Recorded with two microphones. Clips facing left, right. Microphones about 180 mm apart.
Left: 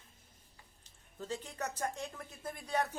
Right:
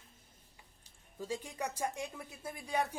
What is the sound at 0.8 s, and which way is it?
Speech, 10° right (ahead or behind).